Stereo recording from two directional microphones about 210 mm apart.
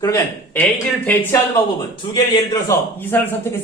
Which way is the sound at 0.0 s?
10° left (ahead or behind).